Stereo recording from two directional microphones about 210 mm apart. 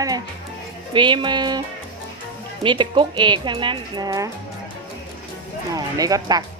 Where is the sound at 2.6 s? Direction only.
25° right (ahead or behind).